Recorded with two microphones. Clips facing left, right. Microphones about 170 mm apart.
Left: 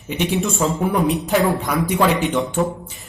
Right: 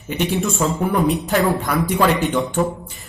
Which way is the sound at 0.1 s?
Centre (ahead or behind).